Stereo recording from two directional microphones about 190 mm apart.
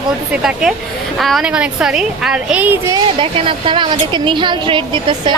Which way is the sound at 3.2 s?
25° right (ahead or behind).